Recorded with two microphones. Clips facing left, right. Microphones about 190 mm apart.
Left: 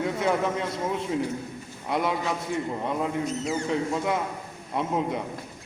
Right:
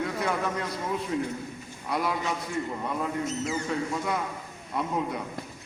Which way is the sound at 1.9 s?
25° left (ahead or behind).